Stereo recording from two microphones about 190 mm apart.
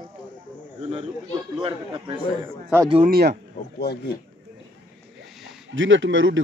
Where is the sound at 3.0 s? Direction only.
55° right (ahead or behind).